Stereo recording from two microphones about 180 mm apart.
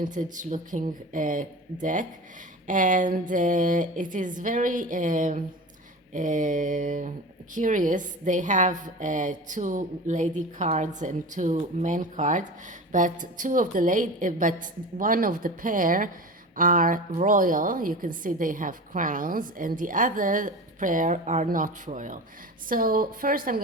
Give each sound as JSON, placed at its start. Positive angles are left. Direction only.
{"t": 0.0, "sound": "a woman's voice", "side_deg": -45}